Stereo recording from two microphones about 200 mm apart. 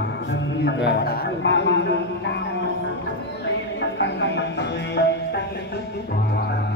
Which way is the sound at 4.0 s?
60° left (ahead or behind).